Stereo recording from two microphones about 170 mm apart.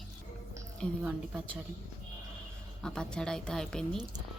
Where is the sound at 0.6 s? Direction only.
10° right (ahead or behind).